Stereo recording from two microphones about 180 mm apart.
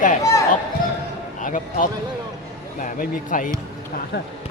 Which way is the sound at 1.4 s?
50° left (ahead or behind).